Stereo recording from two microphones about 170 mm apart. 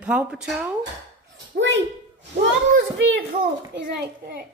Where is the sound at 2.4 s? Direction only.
90° right.